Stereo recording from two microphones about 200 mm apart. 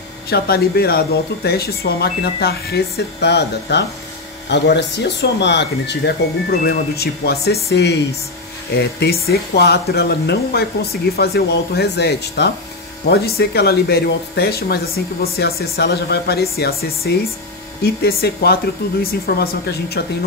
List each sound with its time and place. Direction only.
0.3 s speech: 50° left (ahead or behind)